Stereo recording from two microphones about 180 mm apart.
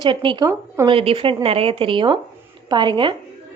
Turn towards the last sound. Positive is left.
turn(degrees=-25)  # may be behind; listen again after turning